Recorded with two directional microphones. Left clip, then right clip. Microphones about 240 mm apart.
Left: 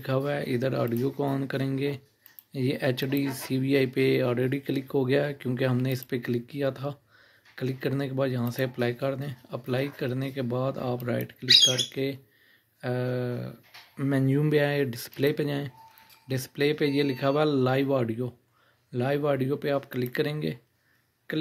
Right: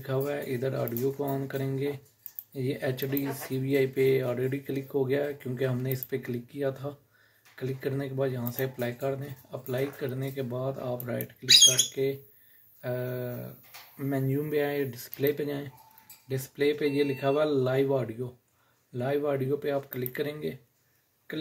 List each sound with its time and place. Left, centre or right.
0.0 s a man's voice: left